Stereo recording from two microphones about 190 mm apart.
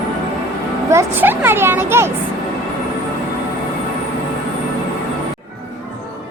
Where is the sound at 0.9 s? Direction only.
10° right (ahead or behind).